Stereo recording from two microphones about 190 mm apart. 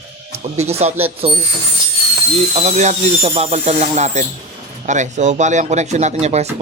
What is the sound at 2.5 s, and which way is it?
Speech, 35° right (ahead or behind).